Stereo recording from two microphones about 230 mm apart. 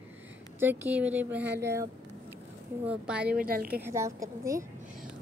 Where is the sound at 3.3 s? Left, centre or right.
Right.